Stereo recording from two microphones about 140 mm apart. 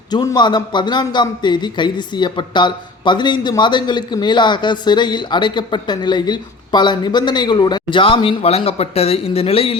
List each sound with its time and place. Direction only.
0.1 s a man's voice: 30° left (ahead or behind)